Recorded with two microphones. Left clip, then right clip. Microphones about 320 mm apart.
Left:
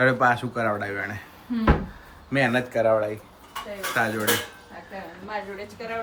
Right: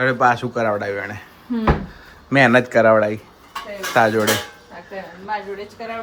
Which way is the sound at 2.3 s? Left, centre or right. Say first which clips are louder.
Right 9 dB; centre.